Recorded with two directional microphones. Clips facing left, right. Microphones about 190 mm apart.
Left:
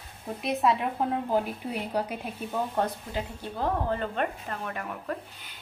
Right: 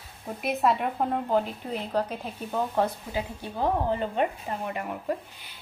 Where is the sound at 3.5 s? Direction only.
15° right (ahead or behind).